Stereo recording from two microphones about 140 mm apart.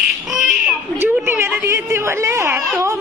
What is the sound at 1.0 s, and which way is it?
A woman's voice, 15° right (ahead or behind).